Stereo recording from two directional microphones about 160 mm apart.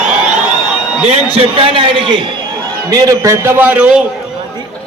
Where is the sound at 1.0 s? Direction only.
40° right (ahead or behind).